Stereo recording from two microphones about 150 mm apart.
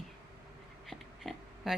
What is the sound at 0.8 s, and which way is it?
Oink, centre (ahead or behind).